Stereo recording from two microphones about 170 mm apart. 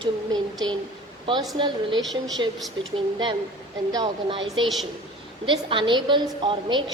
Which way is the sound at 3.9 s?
25° right (ahead or behind).